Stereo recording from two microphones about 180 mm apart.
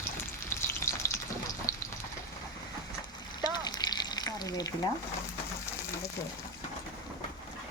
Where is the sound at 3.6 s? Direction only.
25° left (ahead or behind).